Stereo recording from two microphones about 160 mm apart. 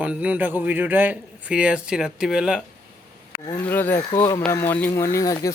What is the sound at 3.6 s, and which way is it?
Speech, 15° left (ahead or behind).